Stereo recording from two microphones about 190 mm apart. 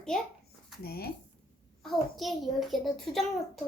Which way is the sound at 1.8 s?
Centre (ahead or behind).